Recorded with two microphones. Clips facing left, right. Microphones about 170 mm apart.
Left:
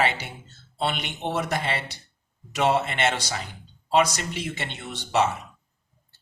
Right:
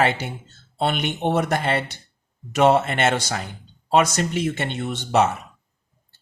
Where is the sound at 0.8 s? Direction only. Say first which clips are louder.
Right 5 dB; 50° right (ahead or behind).